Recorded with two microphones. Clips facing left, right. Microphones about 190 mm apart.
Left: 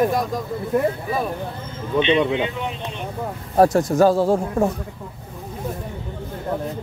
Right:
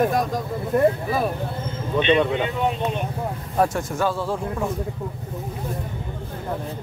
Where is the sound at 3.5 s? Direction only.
35° left (ahead or behind).